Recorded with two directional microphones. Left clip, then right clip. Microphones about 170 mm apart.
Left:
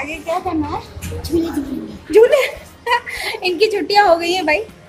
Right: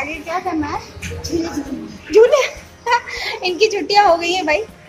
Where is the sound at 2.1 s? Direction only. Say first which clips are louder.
Even; 10° right (ahead or behind).